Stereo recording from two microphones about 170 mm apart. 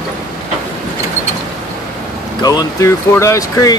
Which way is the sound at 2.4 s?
20° left (ahead or behind).